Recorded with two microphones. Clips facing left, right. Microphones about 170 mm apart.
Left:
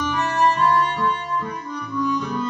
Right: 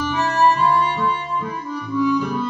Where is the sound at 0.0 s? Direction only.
5° right (ahead or behind).